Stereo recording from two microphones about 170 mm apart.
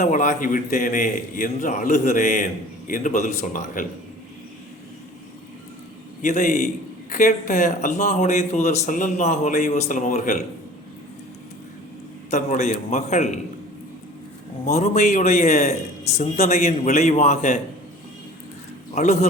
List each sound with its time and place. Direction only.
0.0 s a man's voice: 45° left (ahead or behind)
6.2 s a man's voice: 45° left (ahead or behind)
12.3 s a man's voice: 45° left (ahead or behind)
14.6 s a man's voice: 40° left (ahead or behind)
18.9 s a man's voice: 40° left (ahead or behind)